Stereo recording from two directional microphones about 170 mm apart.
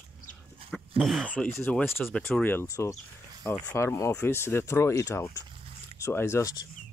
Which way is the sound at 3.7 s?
15° left (ahead or behind).